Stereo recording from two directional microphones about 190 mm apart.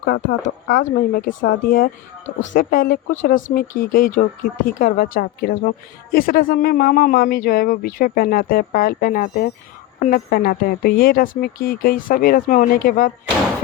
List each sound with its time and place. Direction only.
0.0 s a woman's voice: 50° left (ahead or behind)